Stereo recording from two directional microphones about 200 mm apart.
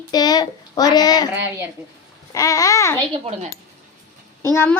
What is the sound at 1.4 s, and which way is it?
Speech, 10° right (ahead or behind).